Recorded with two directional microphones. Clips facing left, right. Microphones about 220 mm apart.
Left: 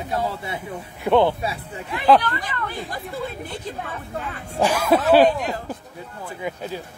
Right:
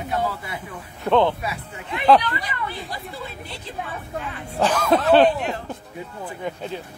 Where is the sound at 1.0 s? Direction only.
10° left (ahead or behind).